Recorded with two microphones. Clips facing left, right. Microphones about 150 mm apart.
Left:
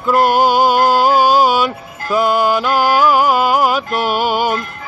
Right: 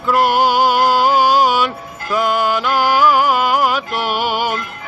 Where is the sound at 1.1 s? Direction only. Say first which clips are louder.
Left 2 dB; 15° right (ahead or behind).